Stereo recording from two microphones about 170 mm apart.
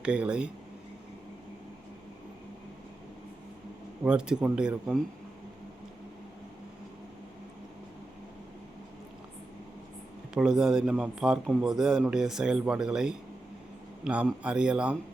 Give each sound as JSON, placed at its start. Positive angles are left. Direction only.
{"t": 0.0, "sound": "speech", "side_deg": -5}
{"t": 4.0, "sound": "a man's voice", "side_deg": -5}
{"t": 10.3, "sound": "a man's voice", "side_deg": -5}